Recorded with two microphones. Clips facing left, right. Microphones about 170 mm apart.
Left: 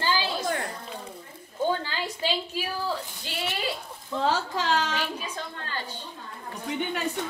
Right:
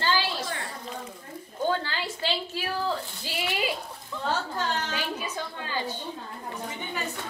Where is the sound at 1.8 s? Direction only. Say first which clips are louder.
Left 1 dB; 15° left (ahead or behind).